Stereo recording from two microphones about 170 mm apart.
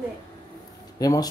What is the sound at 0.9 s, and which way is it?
Speech, 20° left (ahead or behind).